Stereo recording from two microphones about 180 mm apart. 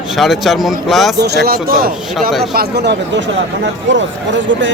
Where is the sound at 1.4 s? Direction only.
55° right (ahead or behind); by 3.3 s 75° right (ahead or behind).